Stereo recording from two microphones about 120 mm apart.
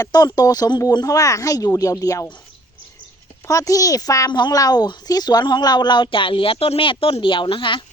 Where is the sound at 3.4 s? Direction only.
30° left (ahead or behind).